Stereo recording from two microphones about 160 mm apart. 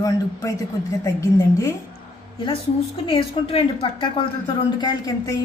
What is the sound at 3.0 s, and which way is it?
A woman's voice, 35° left (ahead or behind).